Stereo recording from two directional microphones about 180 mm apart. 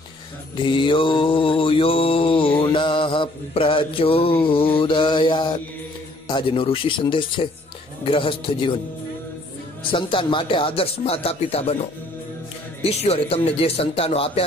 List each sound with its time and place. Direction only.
0.7 s mantra: 25° left (ahead or behind)
6.2 s speech: 25° left (ahead or behind)
9.8 s speech: 30° left (ahead or behind)
12.8 s speech: 35° left (ahead or behind)